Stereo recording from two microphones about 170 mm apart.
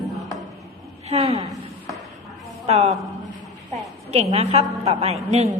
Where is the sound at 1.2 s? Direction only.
25° right (ahead or behind).